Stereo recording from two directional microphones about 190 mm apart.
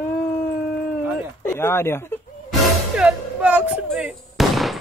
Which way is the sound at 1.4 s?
15° left (ahead or behind).